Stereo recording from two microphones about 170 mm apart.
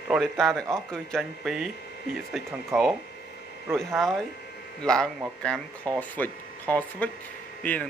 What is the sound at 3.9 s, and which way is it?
Speech, centre (ahead or behind).